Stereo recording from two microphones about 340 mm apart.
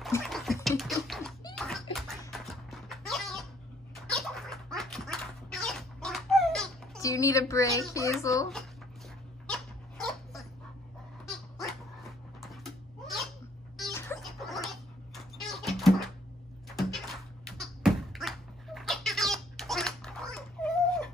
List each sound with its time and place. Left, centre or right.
0.0 s a sound: centre
1.4 s music: centre
7.9 s a child's voice: centre
11.2 s dog: centre
13.7 s music: centre
16.6 s a sound: centre